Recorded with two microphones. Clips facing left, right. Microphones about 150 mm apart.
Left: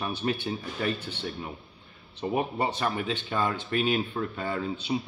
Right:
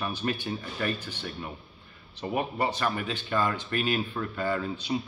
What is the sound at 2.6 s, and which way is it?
Speech, 25° left (ahead or behind).